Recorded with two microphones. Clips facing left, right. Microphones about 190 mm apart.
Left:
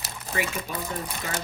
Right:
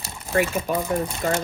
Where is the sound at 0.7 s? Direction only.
50° right (ahead or behind).